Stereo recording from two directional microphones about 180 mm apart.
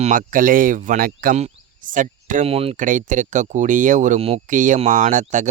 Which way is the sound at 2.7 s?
45° right (ahead or behind).